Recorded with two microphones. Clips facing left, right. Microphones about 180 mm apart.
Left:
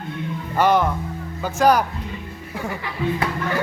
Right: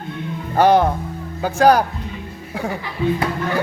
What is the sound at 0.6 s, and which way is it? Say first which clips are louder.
Speech: right 4 dB; 35° right (ahead or behind).